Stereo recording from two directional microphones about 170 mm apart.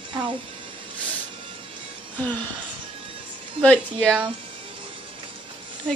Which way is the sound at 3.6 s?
5° left (ahead or behind).